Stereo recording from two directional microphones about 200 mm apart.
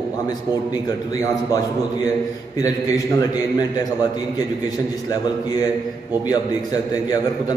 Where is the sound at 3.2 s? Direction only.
20° left (ahead or behind).